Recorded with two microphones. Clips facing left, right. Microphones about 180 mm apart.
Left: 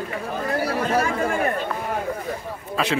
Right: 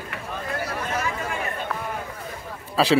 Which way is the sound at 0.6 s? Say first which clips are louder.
Left 8 dB; 30° left (ahead or behind).